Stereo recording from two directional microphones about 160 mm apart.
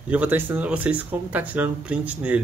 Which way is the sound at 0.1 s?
10° right (ahead or behind).